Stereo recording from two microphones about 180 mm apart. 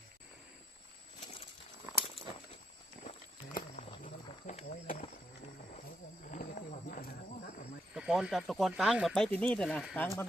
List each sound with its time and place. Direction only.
4.0 s wild animals: 40° left (ahead or behind)
6.3 s wild animals: 45° left (ahead or behind)
7.9 s speech: 5° right (ahead or behind)